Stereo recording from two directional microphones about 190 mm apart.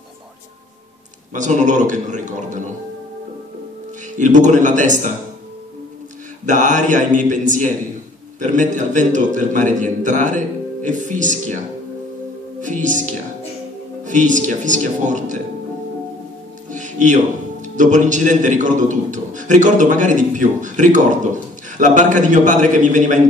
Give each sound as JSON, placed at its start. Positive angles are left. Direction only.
{"t": 1.3, "sound": "a man's voice", "side_deg": -40}
{"t": 4.2, "sound": "a man's voice", "side_deg": -40}
{"t": 6.4, "sound": "a man's voice", "side_deg": -40}
{"t": 16.7, "sound": "a man's voice", "side_deg": -40}